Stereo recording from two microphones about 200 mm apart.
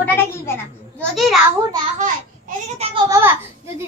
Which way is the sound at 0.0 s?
10° left (ahead or behind).